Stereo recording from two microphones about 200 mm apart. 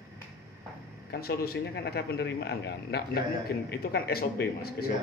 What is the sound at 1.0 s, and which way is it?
Speech, 50° left (ahead or behind).